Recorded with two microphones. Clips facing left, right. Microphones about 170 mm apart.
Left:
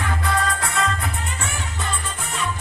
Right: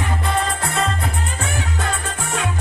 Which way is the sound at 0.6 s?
25° right (ahead or behind).